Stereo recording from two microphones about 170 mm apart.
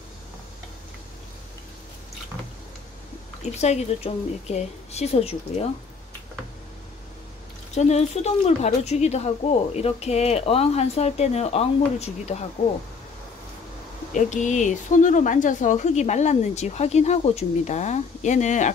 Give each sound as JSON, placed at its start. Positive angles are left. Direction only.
{"t": 3.6, "sound": "a woman's voice", "side_deg": 40}
{"t": 7.7, "sound": "a woman's voice", "side_deg": 40}
{"t": 14.1, "sound": "speech", "side_deg": 45}